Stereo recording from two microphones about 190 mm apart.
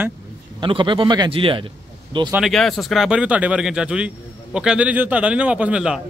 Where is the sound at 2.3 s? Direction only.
Centre (ahead or behind).